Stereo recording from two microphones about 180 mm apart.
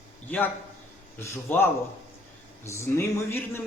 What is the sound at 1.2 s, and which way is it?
Speech, 15° left (ahead or behind).